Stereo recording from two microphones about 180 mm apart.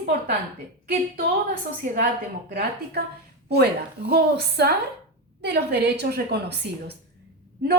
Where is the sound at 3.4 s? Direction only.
65° right (ahead or behind).